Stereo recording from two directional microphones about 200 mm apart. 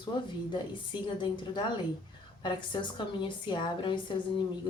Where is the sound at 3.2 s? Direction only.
25° left (ahead or behind).